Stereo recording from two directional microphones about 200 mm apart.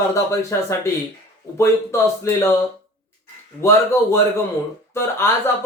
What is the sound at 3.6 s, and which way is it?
Speech, 15° left (ahead or behind).